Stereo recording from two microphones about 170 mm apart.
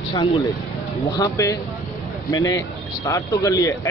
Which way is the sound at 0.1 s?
25° left (ahead or behind).